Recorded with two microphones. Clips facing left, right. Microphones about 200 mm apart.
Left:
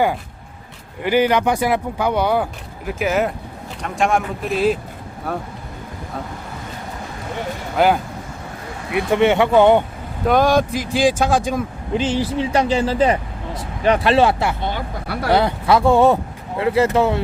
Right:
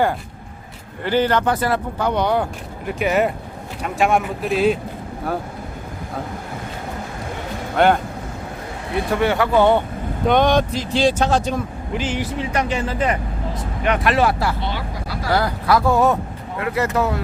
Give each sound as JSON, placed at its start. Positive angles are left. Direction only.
{"t": 1.0, "sound": "speech", "side_deg": 10}
{"t": 7.8, "sound": "speech", "side_deg": 0}
{"t": 9.1, "sound": "speech", "side_deg": 20}
{"t": 10.2, "sound": "speech", "side_deg": 5}
{"t": 11.9, "sound": "speech", "side_deg": 30}
{"t": 14.6, "sound": "speech", "side_deg": 50}
{"t": 15.3, "sound": "speech", "side_deg": 25}